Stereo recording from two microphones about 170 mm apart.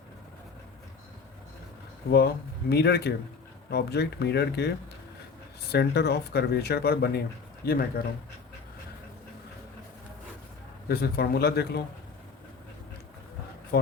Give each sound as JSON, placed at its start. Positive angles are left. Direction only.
{"t": 2.6, "sound": "speech", "side_deg": 70}
{"t": 5.7, "sound": "speech", "side_deg": 75}
{"t": 10.8, "sound": "speech", "side_deg": 65}